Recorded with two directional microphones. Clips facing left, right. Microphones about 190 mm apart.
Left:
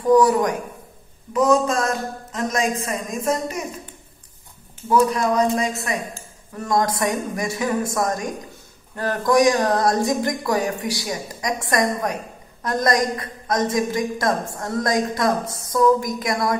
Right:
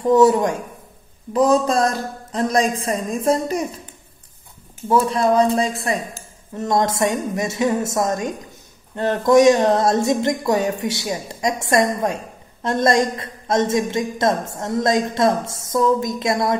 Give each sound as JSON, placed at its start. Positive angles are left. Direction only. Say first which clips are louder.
{"t": 0.1, "sound": "a woman's voice", "louder": "right 1 dB", "side_deg": -25}
{"t": 4.8, "sound": "a woman's voice", "louder": "right 1 dB", "side_deg": -30}